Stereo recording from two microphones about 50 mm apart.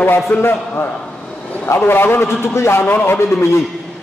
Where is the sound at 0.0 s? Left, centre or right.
Left.